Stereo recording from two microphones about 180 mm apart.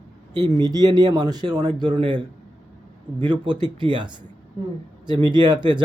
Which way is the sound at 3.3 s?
25° right (ahead or behind).